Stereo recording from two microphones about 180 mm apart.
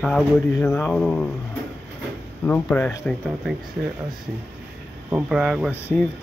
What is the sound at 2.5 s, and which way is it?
Speech, 10° left (ahead or behind).